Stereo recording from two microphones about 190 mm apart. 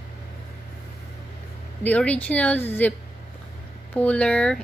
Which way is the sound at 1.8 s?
5° left (ahead or behind).